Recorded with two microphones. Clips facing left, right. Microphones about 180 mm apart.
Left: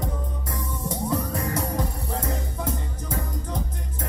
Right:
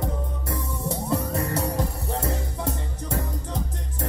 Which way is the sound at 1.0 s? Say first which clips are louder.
Even; 30° right (ahead or behind).